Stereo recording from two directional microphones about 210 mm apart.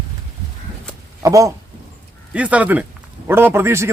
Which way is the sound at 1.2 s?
15° right (ahead or behind).